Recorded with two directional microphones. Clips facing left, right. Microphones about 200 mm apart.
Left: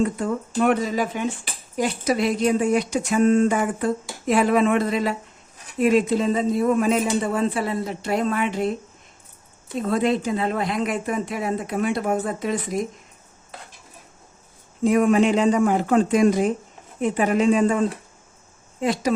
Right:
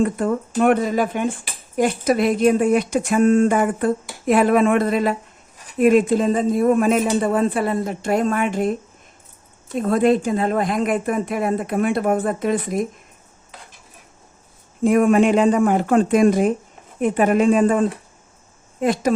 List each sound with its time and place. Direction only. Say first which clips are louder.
0.0 s speech: right 3 dB; 55° right (ahead or behind)
9.8 s speech: right 5 dB; 50° right (ahead or behind)
14.8 s speech: right 3 dB; 50° right (ahead or behind)